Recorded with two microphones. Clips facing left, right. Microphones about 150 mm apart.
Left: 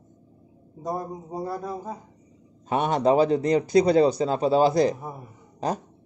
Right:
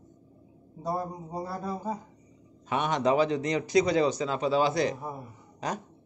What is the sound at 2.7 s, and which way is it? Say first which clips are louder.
Speech: left 5 dB; 35° left (ahead or behind).